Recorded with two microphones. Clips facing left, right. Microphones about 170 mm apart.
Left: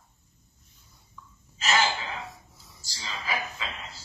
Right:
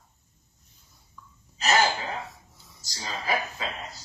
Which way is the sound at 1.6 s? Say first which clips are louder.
Right 3 dB; 40° right (ahead or behind).